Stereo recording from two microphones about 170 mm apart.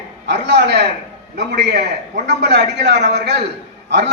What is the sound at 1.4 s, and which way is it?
A man's voice, 90° right.